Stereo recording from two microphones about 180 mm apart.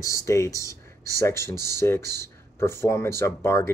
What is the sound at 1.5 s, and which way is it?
Speech, 65° right (ahead or behind).